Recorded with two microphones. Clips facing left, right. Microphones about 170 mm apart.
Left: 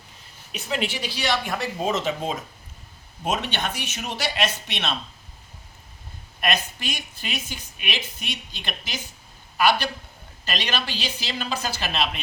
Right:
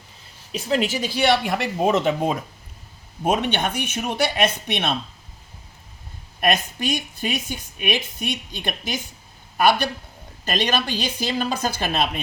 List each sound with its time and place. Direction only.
0.5 s speech: 35° right (ahead or behind); by 4.9 s 55° right (ahead or behind)
6.4 s speech: 50° right (ahead or behind)